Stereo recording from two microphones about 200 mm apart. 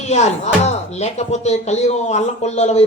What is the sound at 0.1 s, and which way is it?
Speech, 35° left (ahead or behind).